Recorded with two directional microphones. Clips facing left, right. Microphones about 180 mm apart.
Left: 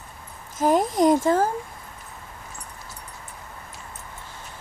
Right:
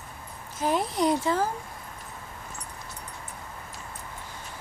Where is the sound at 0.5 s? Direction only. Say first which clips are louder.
Left 6 dB; 45° left (ahead or behind).